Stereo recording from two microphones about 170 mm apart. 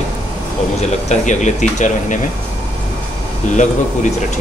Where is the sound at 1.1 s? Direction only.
45° left (ahead or behind).